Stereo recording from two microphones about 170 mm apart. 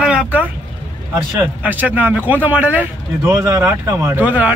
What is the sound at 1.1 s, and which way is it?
Speech, 10° right (ahead or behind).